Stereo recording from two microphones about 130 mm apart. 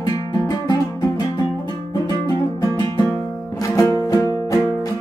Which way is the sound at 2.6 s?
30° left (ahead or behind).